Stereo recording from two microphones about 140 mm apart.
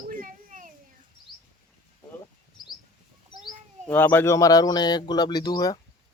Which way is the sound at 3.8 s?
10° left (ahead or behind).